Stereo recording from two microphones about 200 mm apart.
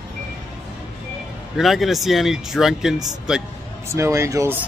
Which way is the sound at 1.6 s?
Centre (ahead or behind).